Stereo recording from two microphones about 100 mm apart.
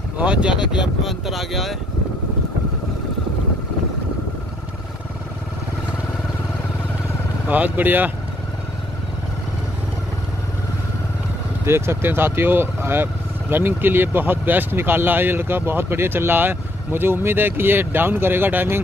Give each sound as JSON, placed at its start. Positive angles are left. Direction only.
{"t": 0.2, "sound": "speech", "side_deg": -10}
{"t": 7.4, "sound": "speech", "side_deg": -15}
{"t": 11.6, "sound": "speech", "side_deg": -25}